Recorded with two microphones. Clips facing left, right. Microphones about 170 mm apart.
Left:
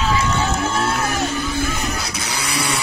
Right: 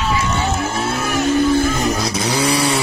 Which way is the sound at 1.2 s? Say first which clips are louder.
Right 8 dB; 55° right (ahead or behind).